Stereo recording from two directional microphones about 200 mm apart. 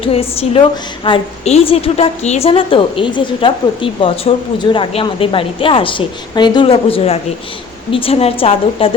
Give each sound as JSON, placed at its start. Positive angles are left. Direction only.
{"t": 0.0, "sound": "a woman's voice", "side_deg": 30}